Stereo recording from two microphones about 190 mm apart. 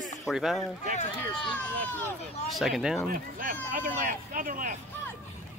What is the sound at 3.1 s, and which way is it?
Speech, 45° right (ahead or behind).